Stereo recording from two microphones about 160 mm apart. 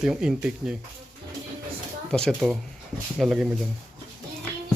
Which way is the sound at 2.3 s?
5° right (ahead or behind).